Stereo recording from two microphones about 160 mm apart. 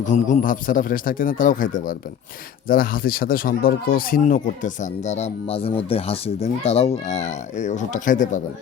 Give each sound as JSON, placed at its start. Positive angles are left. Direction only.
{"t": 0.0, "sound": "a man's voice", "side_deg": 55}